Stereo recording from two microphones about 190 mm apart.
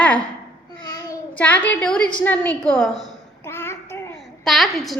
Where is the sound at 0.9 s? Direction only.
20° left (ahead or behind).